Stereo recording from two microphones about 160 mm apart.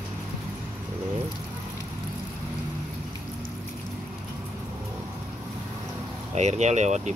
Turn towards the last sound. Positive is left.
turn(degrees=-45)  # may be behind; listen again after turning